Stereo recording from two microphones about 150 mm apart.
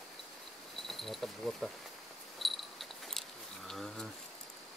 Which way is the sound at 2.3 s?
Centre (ahead or behind).